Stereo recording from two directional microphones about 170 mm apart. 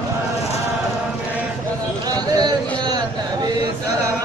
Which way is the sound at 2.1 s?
25° right (ahead or behind).